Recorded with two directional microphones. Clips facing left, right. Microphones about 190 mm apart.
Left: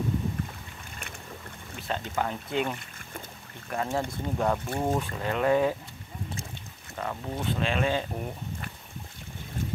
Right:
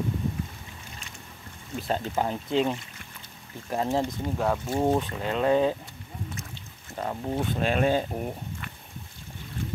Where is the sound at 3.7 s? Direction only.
25° right (ahead or behind).